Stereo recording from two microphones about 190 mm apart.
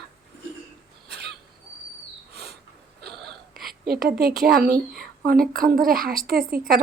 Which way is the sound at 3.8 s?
55° right (ahead or behind).